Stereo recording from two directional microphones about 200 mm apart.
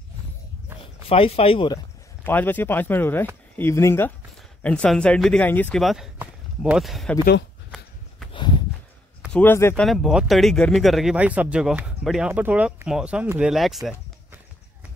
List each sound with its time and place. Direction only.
1.0 s speech: 30° left (ahead or behind)
2.2 s speech: 10° left (ahead or behind)
8.3 s horse: 25° left (ahead or behind)
9.3 s speech: 10° left (ahead or behind)
9.8 s speech: centre (ahead or behind)